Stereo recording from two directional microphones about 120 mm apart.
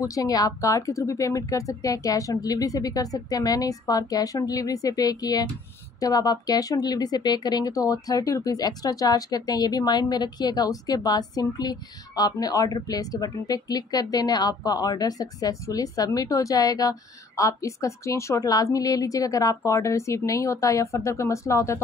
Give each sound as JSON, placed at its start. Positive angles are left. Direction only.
{"t": 0.1, "sound": "a woman's voice", "side_deg": 30}